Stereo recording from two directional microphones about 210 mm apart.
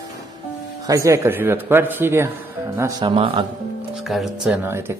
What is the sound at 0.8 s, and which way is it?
A man's voice, 15° right (ahead or behind).